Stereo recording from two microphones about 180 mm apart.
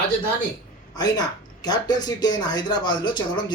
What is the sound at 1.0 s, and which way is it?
Speech, 20° left (ahead or behind).